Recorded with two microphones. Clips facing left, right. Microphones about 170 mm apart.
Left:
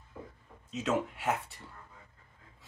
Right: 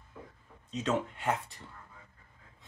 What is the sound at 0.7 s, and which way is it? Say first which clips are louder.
Speech: even; 5° left (ahead or behind).